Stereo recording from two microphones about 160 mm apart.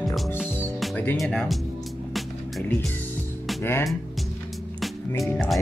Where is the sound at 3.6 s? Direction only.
15° left (ahead or behind).